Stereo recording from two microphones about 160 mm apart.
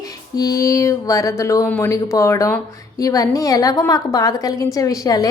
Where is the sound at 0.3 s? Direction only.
20° left (ahead or behind).